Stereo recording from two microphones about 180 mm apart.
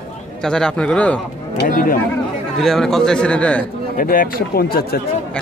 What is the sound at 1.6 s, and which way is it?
Speech, 50° left (ahead or behind).